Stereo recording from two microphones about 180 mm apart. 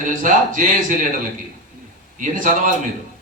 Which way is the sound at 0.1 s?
45° right (ahead or behind).